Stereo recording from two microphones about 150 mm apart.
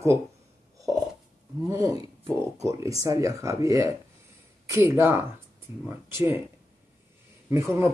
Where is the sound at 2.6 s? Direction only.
20° right (ahead or behind).